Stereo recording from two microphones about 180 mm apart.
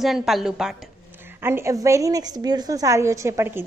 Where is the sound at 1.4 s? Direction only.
15° right (ahead or behind).